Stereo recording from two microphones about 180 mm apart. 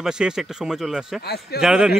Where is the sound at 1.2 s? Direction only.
65° left (ahead or behind).